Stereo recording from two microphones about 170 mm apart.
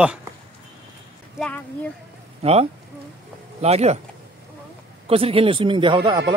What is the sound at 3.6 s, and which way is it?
Speech, 40° right (ahead or behind).